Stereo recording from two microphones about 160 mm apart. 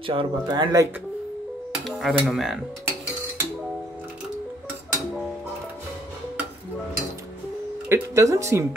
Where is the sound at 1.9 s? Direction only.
Centre (ahead or behind).